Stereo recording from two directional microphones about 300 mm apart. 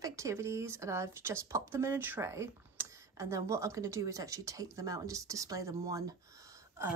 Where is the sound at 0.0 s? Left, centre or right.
Centre.